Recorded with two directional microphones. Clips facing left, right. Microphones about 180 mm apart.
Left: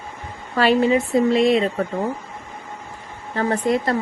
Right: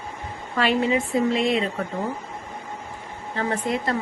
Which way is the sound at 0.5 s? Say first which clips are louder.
Left 5 dB; 35° left (ahead or behind).